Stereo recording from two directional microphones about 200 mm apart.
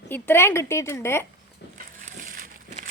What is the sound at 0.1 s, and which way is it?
A woman's voice, 10° left (ahead or behind).